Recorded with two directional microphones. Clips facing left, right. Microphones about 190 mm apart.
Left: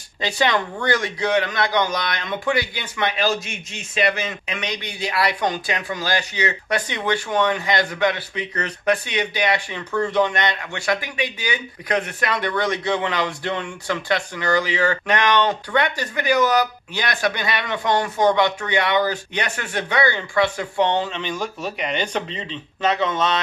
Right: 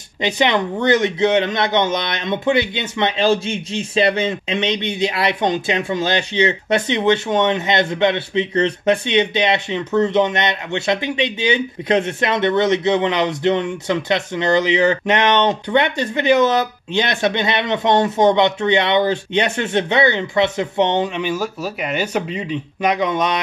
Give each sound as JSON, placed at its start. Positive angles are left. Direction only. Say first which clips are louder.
{"t": 0.2, "sound": "a man's voice", "louder": "right 4 dB", "side_deg": -20}